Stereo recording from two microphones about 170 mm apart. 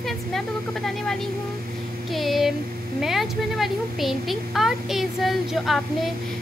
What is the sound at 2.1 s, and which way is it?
Speech, centre (ahead or behind).